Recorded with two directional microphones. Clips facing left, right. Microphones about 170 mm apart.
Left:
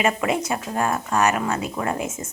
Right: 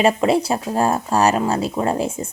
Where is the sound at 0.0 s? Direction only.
30° right (ahead or behind).